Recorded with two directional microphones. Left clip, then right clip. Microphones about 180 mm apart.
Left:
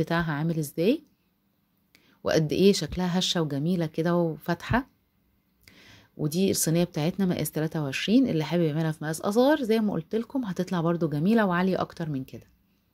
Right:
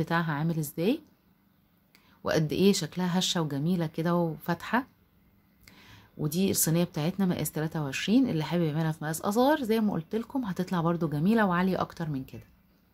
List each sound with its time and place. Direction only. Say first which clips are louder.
0.0 s speech: left 2 dB; 30° left (ahead or behind)